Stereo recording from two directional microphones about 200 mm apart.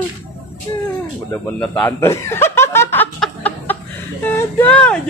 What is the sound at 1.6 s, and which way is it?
Snicker, 10° left (ahead or behind).